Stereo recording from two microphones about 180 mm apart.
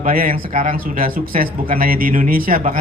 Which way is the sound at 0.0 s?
50° right (ahead or behind).